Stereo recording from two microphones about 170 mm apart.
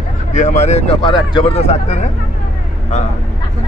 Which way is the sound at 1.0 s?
30° left (ahead or behind).